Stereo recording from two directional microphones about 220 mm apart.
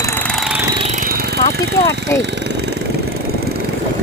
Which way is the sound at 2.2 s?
50° right (ahead or behind).